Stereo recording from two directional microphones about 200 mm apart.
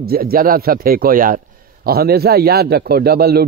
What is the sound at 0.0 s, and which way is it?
A man's voice, 50° right (ahead or behind).